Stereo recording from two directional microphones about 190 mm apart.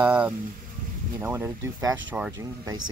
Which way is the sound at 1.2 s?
10° right (ahead or behind).